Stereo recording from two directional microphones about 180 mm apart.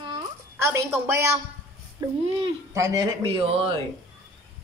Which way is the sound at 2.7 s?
20° right (ahead or behind).